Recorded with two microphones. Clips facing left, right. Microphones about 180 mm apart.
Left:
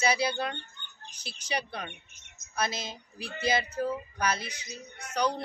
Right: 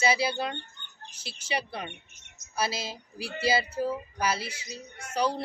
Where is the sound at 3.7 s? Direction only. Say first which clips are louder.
Right 1 dB; 5° right (ahead or behind).